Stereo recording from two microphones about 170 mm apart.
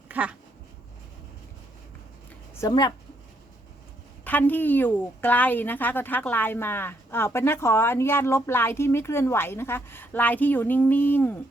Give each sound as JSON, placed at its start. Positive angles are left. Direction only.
{"t": 0.1, "sound": "a sound", "side_deg": -10}
{"t": 2.6, "sound": "speech", "side_deg": 25}
{"t": 4.2, "sound": "a woman's voice", "side_deg": 10}